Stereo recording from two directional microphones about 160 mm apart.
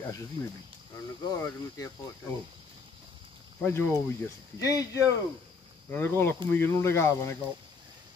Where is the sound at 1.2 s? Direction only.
20° left (ahead or behind).